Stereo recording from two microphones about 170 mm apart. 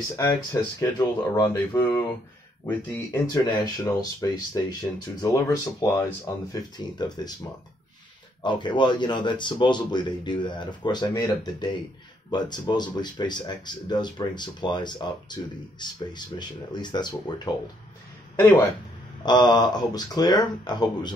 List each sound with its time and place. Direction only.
0.2 s speech: 20° left (ahead or behind)
8.4 s speech: 25° left (ahead or behind)
19.2 s speech: 25° left (ahead or behind)